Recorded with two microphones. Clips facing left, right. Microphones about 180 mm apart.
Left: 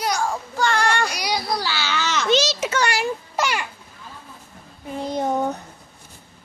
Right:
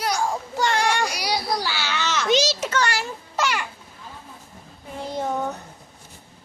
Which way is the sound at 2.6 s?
10° left (ahead or behind).